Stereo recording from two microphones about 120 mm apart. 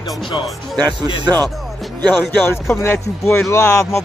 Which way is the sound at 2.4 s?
20° left (ahead or behind).